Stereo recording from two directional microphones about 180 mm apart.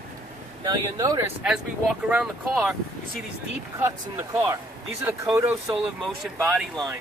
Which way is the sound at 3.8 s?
15° right (ahead or behind).